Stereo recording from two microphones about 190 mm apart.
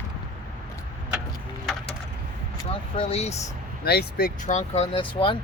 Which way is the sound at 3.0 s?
35° left (ahead or behind).